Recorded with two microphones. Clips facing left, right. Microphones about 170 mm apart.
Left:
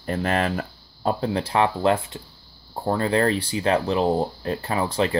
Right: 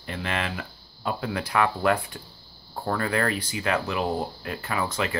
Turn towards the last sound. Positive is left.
turn(degrees=30)  # may be behind; listen again after turning